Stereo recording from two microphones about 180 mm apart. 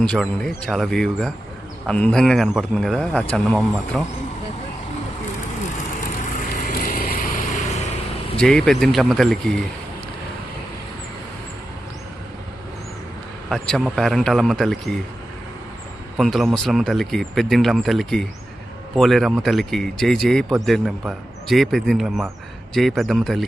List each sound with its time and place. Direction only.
0.0 s speech: 5° left (ahead or behind)
5.7 s vehicle: 50° left (ahead or behind)
8.4 s speech: 5° left (ahead or behind)
13.5 s speech: centre (ahead or behind)
16.1 s speech: centre (ahead or behind)